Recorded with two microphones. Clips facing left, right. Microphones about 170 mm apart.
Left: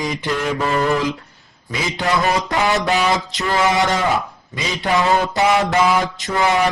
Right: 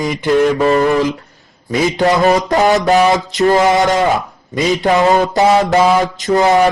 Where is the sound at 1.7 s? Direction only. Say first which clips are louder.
Right 8 dB; 50° right (ahead or behind).